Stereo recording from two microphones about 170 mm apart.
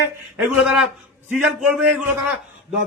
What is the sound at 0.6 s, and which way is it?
Speech, 5° right (ahead or behind).